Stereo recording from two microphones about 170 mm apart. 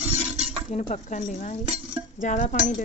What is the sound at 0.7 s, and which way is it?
Speech, 40° left (ahead or behind).